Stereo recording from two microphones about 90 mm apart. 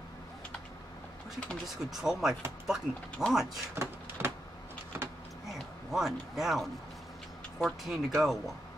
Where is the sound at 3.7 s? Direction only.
30° right (ahead or behind).